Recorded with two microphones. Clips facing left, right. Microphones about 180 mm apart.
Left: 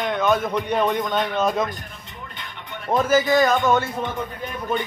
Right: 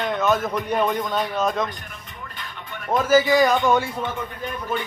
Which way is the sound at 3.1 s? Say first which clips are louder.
Right 2 dB; 10° right (ahead or behind).